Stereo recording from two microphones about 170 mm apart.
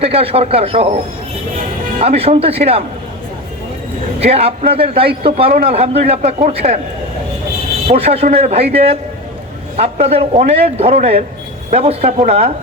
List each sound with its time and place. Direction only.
0.0 s a man's voice: 35° right (ahead or behind)
2.0 s a man's voice: 35° right (ahead or behind)
4.2 s a man's voice: 35° right (ahead or behind)
7.9 s a man's voice: 35° right (ahead or behind)